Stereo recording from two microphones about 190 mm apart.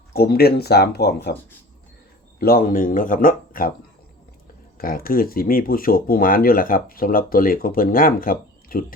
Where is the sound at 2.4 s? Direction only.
50° left (ahead or behind).